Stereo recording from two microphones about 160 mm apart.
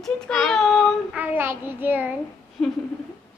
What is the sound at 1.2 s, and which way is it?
Speech, 15° right (ahead or behind).